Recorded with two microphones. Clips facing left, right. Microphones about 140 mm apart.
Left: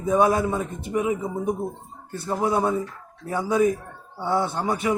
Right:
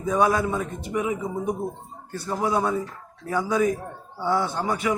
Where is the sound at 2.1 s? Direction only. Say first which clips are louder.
Left 1 dB; 25° left (ahead or behind).